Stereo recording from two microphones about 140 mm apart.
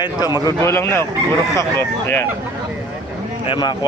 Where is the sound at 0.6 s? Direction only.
20° left (ahead or behind).